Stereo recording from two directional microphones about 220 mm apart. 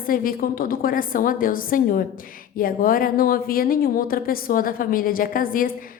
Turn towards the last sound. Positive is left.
turn(degrees=40)  # may be behind; listen again after turning